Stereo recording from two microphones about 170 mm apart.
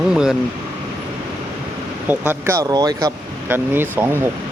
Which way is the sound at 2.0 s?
10° right (ahead or behind).